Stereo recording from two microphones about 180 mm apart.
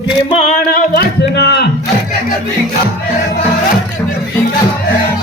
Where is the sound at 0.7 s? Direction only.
60° left (ahead or behind).